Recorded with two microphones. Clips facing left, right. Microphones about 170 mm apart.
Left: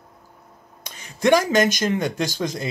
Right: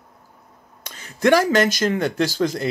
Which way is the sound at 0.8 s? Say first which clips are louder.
Right 1 dB; 15° left (ahead or behind).